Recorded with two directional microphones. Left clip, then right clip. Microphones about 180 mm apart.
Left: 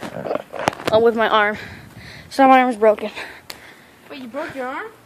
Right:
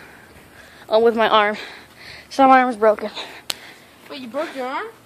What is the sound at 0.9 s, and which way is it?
A woman's voice, centre (ahead or behind).